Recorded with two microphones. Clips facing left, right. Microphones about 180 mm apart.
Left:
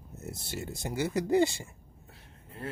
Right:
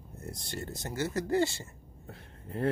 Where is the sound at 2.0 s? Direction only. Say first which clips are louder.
Right 9 dB; 55° right (ahead or behind).